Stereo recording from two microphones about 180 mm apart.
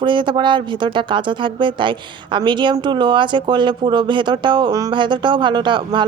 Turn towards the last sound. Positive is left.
turn(degrees=-25)  # may be behind; listen again after turning